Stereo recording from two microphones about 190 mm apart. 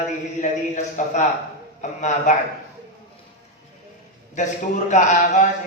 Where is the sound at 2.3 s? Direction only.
40° left (ahead or behind).